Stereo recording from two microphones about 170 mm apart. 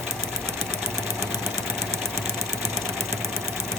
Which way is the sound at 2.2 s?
15° right (ahead or behind).